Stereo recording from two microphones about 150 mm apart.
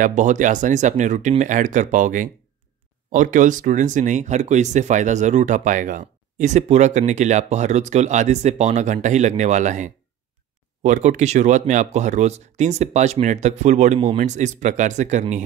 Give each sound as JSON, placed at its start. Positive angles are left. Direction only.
{"t": 0.0, "sound": "speech", "side_deg": -55}